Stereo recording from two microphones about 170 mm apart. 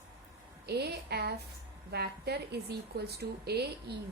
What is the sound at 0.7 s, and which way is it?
A woman's voice, 70° right (ahead or behind).